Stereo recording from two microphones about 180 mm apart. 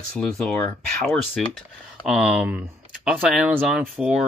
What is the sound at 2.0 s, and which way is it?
Speech, 5° right (ahead or behind).